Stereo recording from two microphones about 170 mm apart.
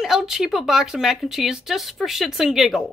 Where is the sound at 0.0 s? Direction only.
Centre (ahead or behind).